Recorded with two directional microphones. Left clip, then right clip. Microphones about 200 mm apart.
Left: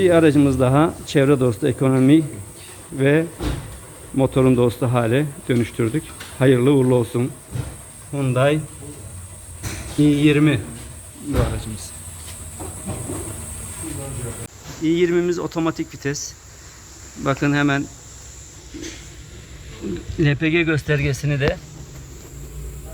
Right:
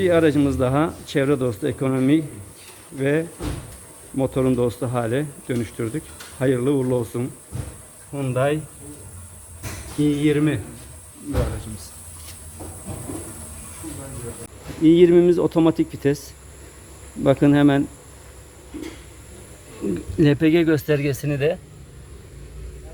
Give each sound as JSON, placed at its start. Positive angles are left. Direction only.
{"t": 0.0, "sound": "speech", "side_deg": 0}
{"t": 10.0, "sound": "speech", "side_deg": 5}
{"t": 14.8, "sound": "speech", "side_deg": -25}
{"t": 17.2, "sound": "speech", "side_deg": -25}
{"t": 20.1, "sound": "speech", "side_deg": -35}